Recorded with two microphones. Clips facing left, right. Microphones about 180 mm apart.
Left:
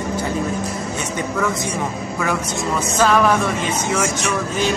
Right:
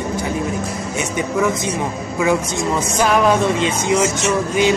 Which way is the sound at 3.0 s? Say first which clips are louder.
Right 1 dB; 15° right (ahead or behind).